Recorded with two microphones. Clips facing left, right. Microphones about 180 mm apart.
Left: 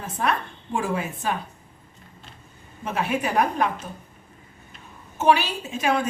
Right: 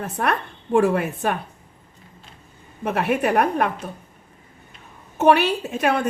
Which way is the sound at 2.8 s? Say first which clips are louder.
Right 5 dB; 60° right (ahead or behind).